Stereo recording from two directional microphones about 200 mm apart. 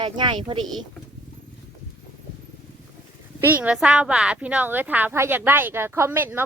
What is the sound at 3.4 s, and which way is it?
A woman's voice, 10° right (ahead or behind).